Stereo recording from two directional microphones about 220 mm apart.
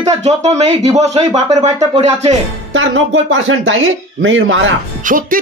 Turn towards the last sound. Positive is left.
turn(degrees=-40)  # may be behind; listen again after turning